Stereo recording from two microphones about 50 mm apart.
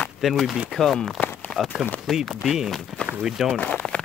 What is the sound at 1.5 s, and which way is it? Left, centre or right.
Run, left.